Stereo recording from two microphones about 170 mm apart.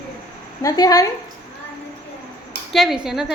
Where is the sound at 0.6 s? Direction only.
20° left (ahead or behind).